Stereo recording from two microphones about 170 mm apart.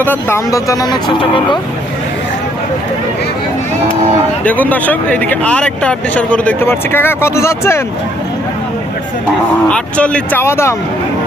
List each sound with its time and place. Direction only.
0.0 s speech: 10° left (ahead or behind)
4.4 s speech: 10° left (ahead or behind)
9.6 s speech: 5° left (ahead or behind)